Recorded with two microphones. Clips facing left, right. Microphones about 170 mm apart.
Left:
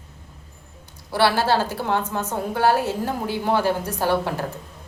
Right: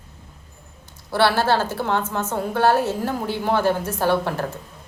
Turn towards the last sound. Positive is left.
turn(degrees=10)  # may be behind; listen again after turning